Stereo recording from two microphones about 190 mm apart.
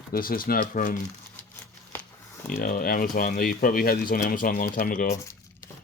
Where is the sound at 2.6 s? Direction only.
50° left (ahead or behind).